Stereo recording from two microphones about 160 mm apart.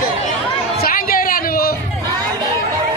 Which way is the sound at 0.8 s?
65° left (ahead or behind).